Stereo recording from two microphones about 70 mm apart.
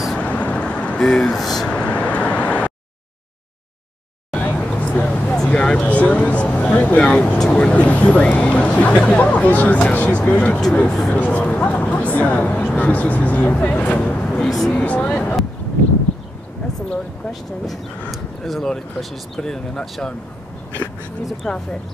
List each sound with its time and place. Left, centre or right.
0.2 s vehicle: centre
1.0 s speech: centre
1.7 s vehicle: centre
4.3 s vehicle: centre
5.3 s a sound: centre
7.3 s speech: centre
10.9 s speech: centre
11.1 s speech: left
18.1 s speech: centre
21.4 s speech: centre